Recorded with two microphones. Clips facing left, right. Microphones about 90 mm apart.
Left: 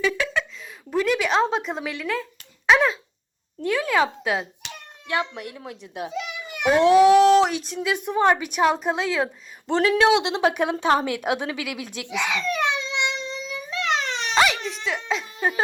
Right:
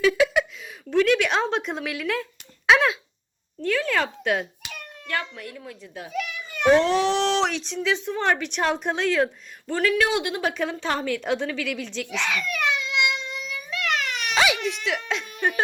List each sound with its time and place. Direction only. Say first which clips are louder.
0.0 s a sound: right 4 dB; 10° right (ahead or behind)
0.9 s a woman's voice: right 2 dB; 10° left (ahead or behind)
3.6 s speech: left 2 dB; 15° left (ahead or behind)
4.7 s a child's voice: left 3 dB; 20° left (ahead or behind)
7.2 s a sound: left 7 dB; 5° left (ahead or behind)
7.9 s a woman's voice: left 8 dB; 15° left (ahead or behind)
9.6 s speech: left 4 dB; 25° left (ahead or behind)
12.4 s a sound: left 2 dB; 25° left (ahead or behind)
14.3 s crying: left 2 dB; centre (ahead or behind)
15.3 s music: right 1 dB; 20° left (ahead or behind)